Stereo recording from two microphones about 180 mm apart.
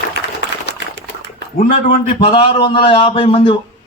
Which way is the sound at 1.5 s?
40° left (ahead or behind).